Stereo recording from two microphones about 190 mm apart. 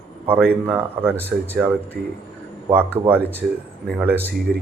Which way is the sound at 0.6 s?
10° right (ahead or behind).